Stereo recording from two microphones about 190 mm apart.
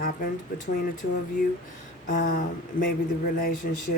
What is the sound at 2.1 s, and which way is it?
Speech, 45° left (ahead or behind).